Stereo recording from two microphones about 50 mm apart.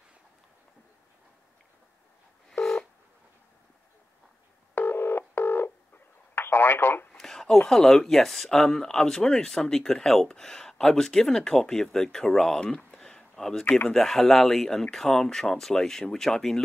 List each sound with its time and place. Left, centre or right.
2.6 s telephone dialing: centre
4.7 s telephone dialing: left
6.3 s telephone: left
7.2 s a sound: centre
7.7 s speech: centre
12.5 s a sound: centre
13.9 s speech: centre